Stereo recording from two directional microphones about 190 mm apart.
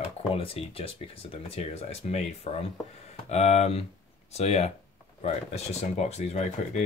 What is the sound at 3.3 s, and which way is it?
Speech, 35° left (ahead or behind).